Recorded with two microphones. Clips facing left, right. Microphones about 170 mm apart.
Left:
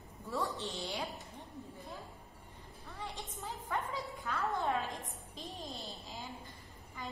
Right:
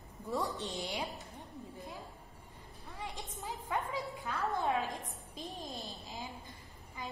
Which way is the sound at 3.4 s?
15° right (ahead or behind).